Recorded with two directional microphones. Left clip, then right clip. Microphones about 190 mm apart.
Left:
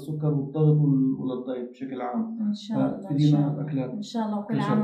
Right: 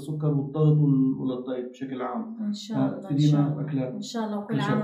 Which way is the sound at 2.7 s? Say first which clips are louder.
Left 1 dB; 20° right (ahead or behind).